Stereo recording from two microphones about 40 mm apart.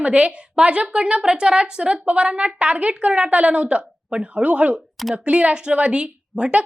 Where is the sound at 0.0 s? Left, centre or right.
Right.